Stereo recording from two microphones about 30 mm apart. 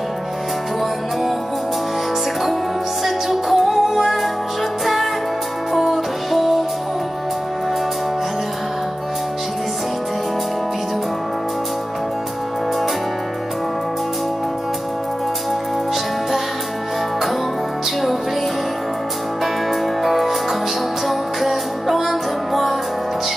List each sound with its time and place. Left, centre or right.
3.0 s music: centre
5.7 s music: centre
19.4 s music: centre